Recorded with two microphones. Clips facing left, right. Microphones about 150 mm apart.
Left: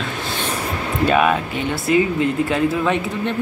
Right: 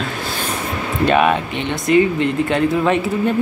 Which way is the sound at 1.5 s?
5° left (ahead or behind).